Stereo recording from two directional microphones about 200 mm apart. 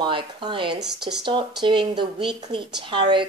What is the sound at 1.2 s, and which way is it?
A woman's voice, 25° right (ahead or behind).